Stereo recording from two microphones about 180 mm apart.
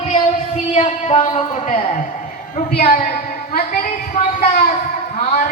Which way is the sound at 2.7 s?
55° left (ahead or behind).